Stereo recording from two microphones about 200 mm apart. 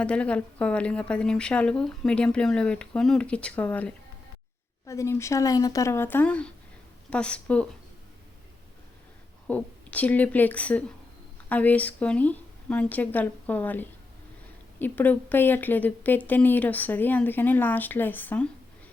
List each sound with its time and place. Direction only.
0.0 s a woman's voice: 5° left (ahead or behind)
9.5 s speech: 5° left (ahead or behind)